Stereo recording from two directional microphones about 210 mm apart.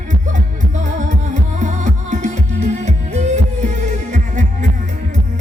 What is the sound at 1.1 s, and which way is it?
Music, 35° right (ahead or behind).